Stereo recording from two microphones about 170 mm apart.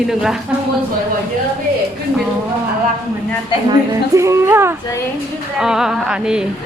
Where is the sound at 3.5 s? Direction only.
30° left (ahead or behind).